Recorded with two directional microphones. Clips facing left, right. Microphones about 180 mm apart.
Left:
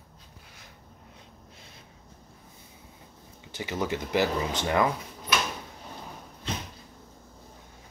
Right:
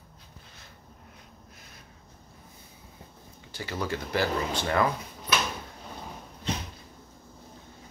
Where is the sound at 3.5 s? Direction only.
20° left (ahead or behind).